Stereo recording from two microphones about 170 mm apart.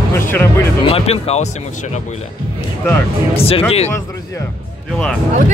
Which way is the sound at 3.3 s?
35° left (ahead or behind).